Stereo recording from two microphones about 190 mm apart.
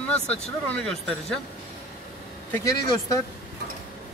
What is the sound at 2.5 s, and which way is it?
Speech, 15° left (ahead or behind).